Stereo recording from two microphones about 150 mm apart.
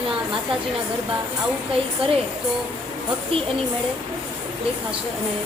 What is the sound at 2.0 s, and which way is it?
Speech, 35° right (ahead or behind).